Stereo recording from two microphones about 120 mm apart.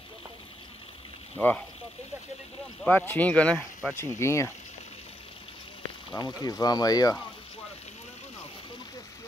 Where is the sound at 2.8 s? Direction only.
15° left (ahead or behind).